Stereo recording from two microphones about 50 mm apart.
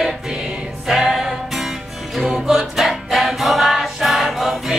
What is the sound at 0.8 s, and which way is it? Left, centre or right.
Music, centre.